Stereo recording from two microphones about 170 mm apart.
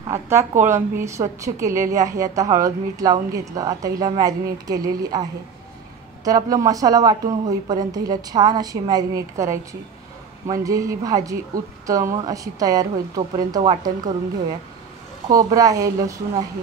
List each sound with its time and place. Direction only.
0.1 s a woman's voice: 15° right (ahead or behind)
6.2 s a woman's voice: 20° right (ahead or behind)
15.2 s a woman's voice: 20° right (ahead or behind)